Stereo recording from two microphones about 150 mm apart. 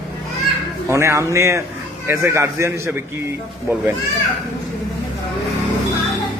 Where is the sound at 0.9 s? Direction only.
20° right (ahead or behind).